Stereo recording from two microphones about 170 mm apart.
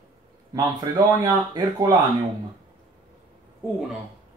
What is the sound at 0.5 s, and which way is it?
Speech, 20° right (ahead or behind).